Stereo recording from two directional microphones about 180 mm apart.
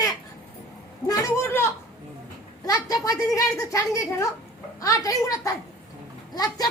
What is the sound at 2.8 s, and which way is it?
A woman's voice, 20° left (ahead or behind).